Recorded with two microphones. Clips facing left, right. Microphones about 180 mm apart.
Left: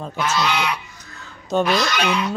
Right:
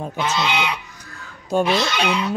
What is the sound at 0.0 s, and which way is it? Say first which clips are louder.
Speech: even; 15° right (ahead or behind).